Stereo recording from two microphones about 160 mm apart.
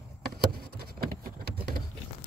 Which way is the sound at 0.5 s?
70° right (ahead or behind).